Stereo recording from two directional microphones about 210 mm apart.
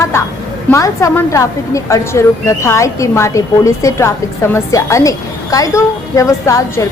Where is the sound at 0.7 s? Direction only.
15° left (ahead or behind).